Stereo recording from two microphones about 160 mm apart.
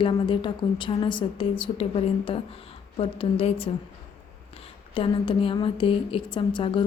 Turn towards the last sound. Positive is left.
turn(degrees=30)  # may be behind; listen again after turning